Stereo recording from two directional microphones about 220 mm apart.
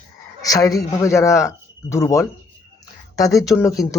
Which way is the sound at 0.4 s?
15° left (ahead or behind).